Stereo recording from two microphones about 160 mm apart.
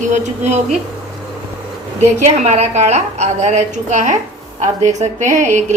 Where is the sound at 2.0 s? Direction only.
45° right (ahead or behind).